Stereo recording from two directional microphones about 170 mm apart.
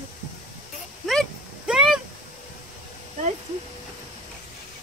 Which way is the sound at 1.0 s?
Centre (ahead or behind).